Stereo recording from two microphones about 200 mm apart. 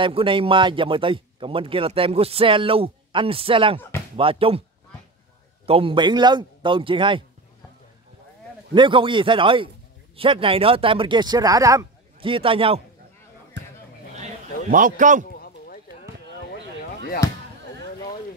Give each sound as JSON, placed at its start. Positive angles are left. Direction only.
{"t": 0.0, "sound": "speech", "side_deg": -25}
{"t": 5.7, "sound": "speech", "side_deg": -25}
{"t": 8.7, "sound": "speech", "side_deg": -25}
{"t": 14.7, "sound": "a man's voice", "side_deg": -40}
{"t": 15.4, "sound": "a sound", "side_deg": 50}